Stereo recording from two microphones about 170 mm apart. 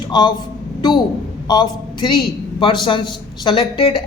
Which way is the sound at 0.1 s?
25° left (ahead or behind).